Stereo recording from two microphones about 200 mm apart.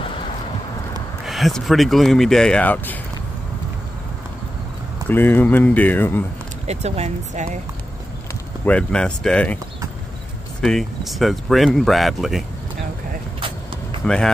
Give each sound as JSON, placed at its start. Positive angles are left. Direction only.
{"t": 1.2, "sound": "speech", "side_deg": 0}
{"t": 5.0, "sound": "speech", "side_deg": 10}
{"t": 6.7, "sound": "speech", "side_deg": -35}
{"t": 8.6, "sound": "speech", "side_deg": 5}
{"t": 10.6, "sound": "speech", "side_deg": 0}
{"t": 14.0, "sound": "speech", "side_deg": 5}